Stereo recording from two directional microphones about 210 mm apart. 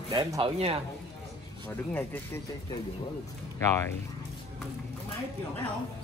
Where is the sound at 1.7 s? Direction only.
10° left (ahead or behind).